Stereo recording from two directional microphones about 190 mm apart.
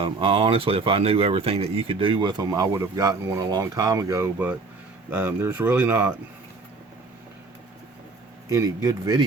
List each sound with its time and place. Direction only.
0.0 s speech: 30° right (ahead or behind); by 6.1 s 10° right (ahead or behind)
8.4 s speech: 15° right (ahead or behind)